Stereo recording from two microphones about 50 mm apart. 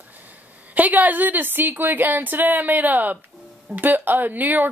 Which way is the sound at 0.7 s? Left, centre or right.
Right.